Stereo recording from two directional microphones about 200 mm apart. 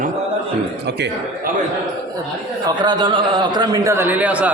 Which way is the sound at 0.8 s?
60° right (ahead or behind).